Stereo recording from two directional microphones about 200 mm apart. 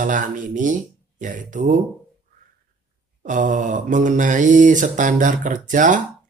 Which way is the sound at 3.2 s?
40° right (ahead or behind).